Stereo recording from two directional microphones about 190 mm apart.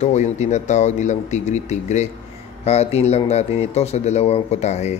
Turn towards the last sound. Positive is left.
turn(degrees=35)  # may be behind; listen again after turning